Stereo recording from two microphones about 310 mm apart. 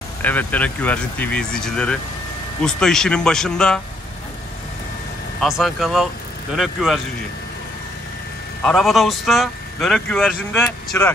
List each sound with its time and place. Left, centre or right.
0.2 s speech: centre
5.4 s speech: centre
8.6 s speech: centre